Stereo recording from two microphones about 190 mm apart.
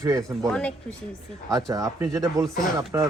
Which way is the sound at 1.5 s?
20° right (ahead or behind).